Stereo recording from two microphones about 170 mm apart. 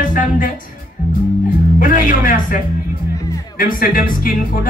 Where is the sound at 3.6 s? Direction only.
55° left (ahead or behind).